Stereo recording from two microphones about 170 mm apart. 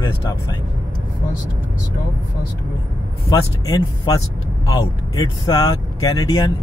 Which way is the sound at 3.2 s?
20° left (ahead or behind).